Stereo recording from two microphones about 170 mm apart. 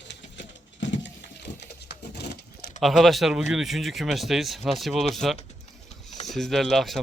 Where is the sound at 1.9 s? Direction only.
75° left (ahead or behind).